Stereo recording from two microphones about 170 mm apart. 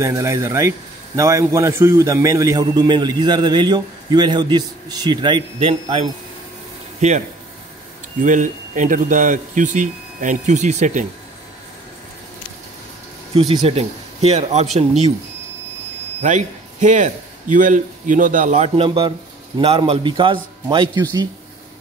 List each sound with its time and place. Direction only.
0.0 s a man's voice: 20° right (ahead or behind); by 11.1 s 45° right (ahead or behind)
13.3 s speech: 35° right (ahead or behind)
16.2 s a man's voice: 45° right (ahead or behind)
18.8 s a man's voice: 35° right (ahead or behind)